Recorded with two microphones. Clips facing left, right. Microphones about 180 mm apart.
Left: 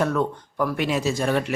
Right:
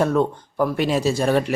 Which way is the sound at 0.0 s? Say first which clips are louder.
Right 4 dB; 30° right (ahead or behind).